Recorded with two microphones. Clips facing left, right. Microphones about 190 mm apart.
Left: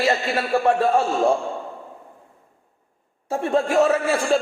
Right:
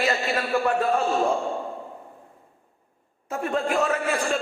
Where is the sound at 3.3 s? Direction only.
30° left (ahead or behind).